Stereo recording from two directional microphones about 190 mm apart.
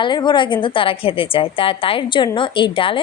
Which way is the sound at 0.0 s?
25° left (ahead or behind).